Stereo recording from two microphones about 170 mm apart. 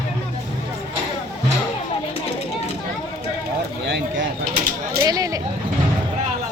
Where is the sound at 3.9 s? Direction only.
90° right.